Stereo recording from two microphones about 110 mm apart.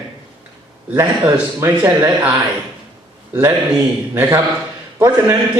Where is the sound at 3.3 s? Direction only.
20° right (ahead or behind).